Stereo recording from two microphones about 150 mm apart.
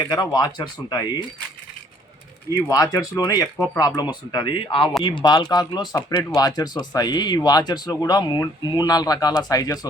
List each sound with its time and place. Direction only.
0.1 s speech: 25° left (ahead or behind)
2.5 s speech: 20° left (ahead or behind)